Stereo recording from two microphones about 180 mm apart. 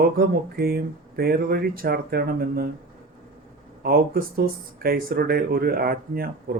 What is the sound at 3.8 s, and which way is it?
Speech, 55° right (ahead or behind).